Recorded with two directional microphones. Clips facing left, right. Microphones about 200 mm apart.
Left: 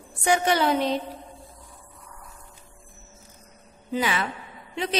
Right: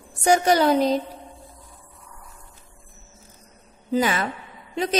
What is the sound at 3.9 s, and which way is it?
Speech, 40° right (ahead or behind).